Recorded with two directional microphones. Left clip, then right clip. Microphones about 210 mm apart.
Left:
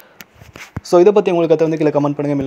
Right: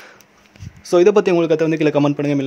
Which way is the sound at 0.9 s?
5° right (ahead or behind).